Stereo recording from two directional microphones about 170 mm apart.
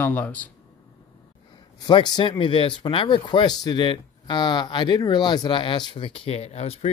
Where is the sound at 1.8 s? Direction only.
25° left (ahead or behind).